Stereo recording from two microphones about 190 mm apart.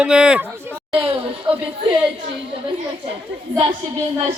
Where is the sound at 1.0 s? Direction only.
25° right (ahead or behind).